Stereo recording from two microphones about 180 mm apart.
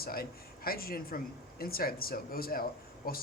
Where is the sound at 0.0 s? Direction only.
55° left (ahead or behind).